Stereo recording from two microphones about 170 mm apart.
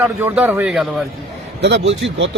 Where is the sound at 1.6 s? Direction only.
90° right.